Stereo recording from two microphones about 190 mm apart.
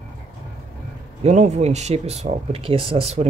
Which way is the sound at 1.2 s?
35° right (ahead or behind).